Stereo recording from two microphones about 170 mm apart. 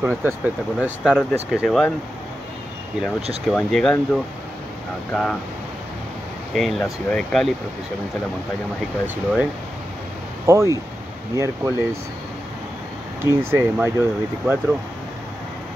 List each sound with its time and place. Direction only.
0.0 s speech: 10° right (ahead or behind)
3.4 s speech: 5° left (ahead or behind)
6.5 s speech: centre (ahead or behind)
9.0 s speech: 10° right (ahead or behind)
13.2 s speech: 15° right (ahead or behind)